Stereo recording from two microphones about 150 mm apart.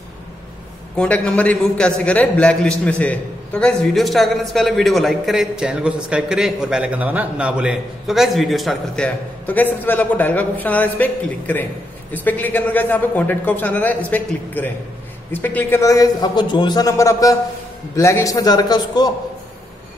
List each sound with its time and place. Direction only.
0.9 s a man's voice: 10° left (ahead or behind); by 19.1 s 25° left (ahead or behind)